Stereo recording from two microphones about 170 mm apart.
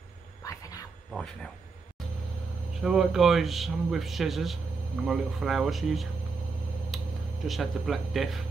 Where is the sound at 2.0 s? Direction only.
5° left (ahead or behind).